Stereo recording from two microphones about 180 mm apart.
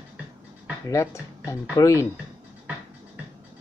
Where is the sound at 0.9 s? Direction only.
15° left (ahead or behind).